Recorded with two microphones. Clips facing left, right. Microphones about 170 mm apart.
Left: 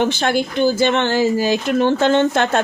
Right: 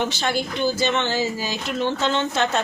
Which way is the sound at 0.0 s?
55° left (ahead or behind).